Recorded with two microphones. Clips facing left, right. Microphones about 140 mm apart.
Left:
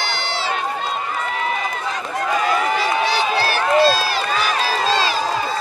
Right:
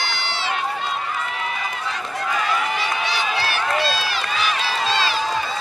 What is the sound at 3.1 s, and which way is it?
Run, 35° left (ahead or behind).